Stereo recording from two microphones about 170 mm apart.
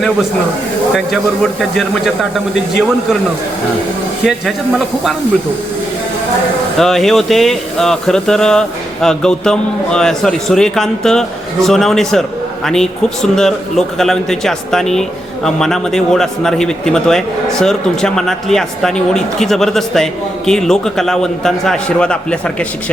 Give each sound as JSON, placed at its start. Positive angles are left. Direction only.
{"t": 1.7, "sound": "speech", "side_deg": 0}
{"t": 4.3, "sound": "speech", "side_deg": 0}
{"t": 6.7, "sound": "speech", "side_deg": 0}